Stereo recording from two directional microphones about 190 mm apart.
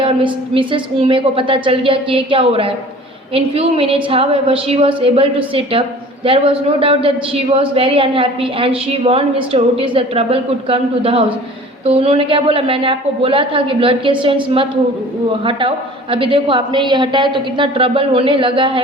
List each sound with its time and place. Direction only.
0.0 s a man's voice: 25° right (ahead or behind)